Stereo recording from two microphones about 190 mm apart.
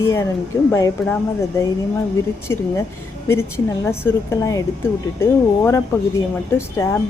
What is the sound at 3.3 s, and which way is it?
A woman's voice, 15° left (ahead or behind).